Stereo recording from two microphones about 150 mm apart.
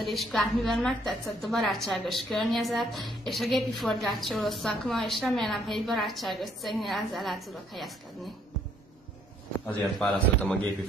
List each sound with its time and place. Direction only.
0.0 s a woman's voice: centre (ahead or behind)
9.7 s a woman's voice: 5° left (ahead or behind)